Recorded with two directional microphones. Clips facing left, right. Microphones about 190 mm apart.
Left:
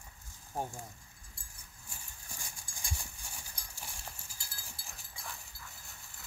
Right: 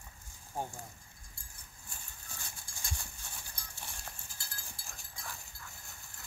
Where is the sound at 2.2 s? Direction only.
15° left (ahead or behind).